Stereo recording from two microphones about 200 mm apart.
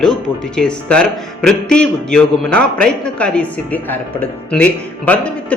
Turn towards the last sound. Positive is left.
turn(degrees=10)  # may be behind; listen again after turning